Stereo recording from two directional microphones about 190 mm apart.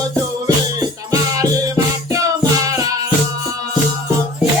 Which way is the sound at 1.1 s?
20° right (ahead or behind).